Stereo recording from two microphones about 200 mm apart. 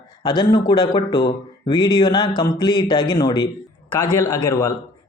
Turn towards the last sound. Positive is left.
turn(degrees=15)  # may be behind; listen again after turning